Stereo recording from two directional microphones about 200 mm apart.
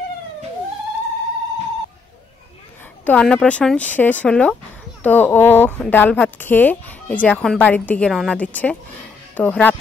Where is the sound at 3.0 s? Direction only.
5° left (ahead or behind).